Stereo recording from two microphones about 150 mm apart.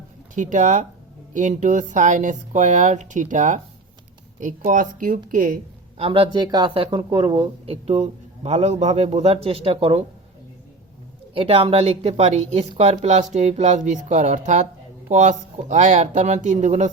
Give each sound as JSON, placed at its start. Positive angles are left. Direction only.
{"t": 0.3, "sound": "speech", "side_deg": -55}
{"t": 6.0, "sound": "speech", "side_deg": -35}
{"t": 11.3, "sound": "speech", "side_deg": -40}